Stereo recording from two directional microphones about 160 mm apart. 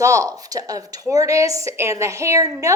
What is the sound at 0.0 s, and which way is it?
A woman's voice, 20° right (ahead or behind).